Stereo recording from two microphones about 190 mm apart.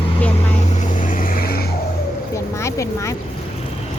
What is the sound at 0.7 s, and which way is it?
Vehicle, 40° left (ahead or behind).